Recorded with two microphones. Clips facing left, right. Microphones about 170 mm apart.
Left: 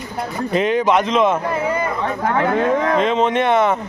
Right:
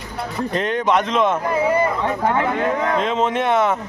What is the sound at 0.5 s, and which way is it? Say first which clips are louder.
Speech: left 3 dB; 5° left (ahead or behind).